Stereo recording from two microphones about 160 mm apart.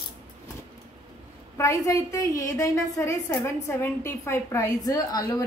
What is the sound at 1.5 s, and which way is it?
A woman's voice, 20° left (ahead or behind).